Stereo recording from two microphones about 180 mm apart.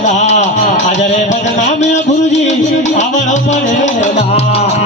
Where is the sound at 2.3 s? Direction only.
40° left (ahead or behind).